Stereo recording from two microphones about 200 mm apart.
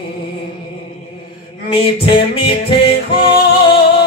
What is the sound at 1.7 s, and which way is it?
Music, 25° left (ahead or behind).